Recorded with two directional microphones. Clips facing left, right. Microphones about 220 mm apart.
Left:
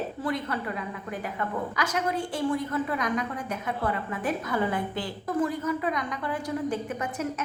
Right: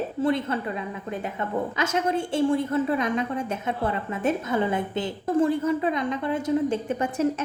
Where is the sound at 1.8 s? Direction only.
25° right (ahead or behind).